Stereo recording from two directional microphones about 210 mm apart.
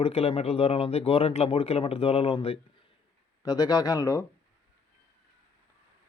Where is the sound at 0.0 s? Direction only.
30° left (ahead or behind).